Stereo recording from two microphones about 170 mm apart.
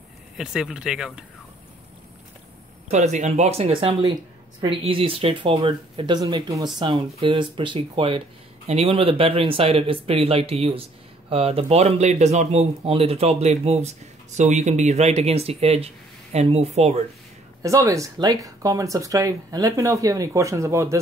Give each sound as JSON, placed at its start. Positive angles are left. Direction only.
{"t": 0.4, "sound": "speech", "side_deg": -5}
{"t": 2.9, "sound": "speech", "side_deg": -45}
{"t": 17.6, "sound": "speech", "side_deg": -20}